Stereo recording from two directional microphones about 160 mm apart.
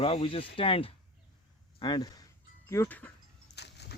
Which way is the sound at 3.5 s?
90° left.